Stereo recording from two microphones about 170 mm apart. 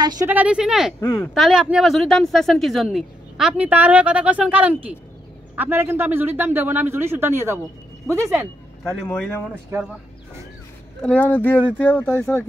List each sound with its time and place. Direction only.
0.0 s speech: 25° right (ahead or behind)
0.3 s speech: 10° right (ahead or behind)
1.0 s speech: 15° left (ahead or behind)
1.3 s a man's voice: centre (ahead or behind)
9.1 s speech: 10° left (ahead or behind)
11.0 s speech: 10° left (ahead or behind)